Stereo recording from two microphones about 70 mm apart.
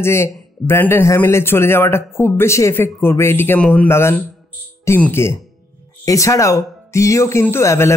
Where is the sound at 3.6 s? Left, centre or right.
Left.